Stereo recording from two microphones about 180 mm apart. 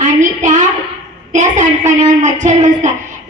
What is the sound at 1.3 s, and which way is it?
A woman's voice, 45° right (ahead or behind).